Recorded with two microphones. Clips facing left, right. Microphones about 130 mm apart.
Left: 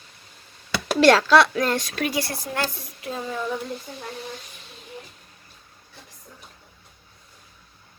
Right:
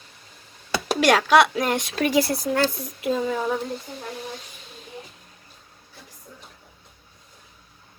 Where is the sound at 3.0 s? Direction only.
90° right.